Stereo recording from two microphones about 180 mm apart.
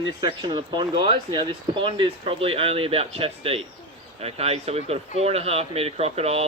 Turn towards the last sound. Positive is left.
turn(degrees=-35)  # may be behind; listen again after turning